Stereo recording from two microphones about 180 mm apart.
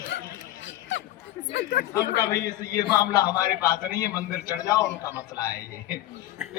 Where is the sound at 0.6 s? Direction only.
90° left.